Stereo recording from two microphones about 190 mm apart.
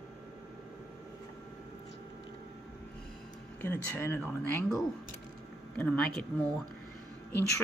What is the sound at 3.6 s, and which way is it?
Speech, 10° left (ahead or behind).